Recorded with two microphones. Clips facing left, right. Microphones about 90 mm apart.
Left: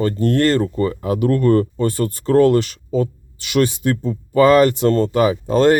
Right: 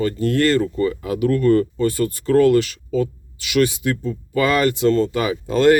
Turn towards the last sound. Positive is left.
turn(degrees=35)  # may be behind; listen again after turning